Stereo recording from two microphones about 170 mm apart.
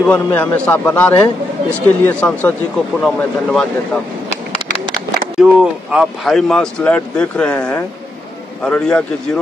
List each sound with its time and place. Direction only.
0.0 s a man's voice: 10° left (ahead or behind)
4.3 s a sound: 40° left (ahead or behind)
5.4 s a man's voice: 5° right (ahead or behind)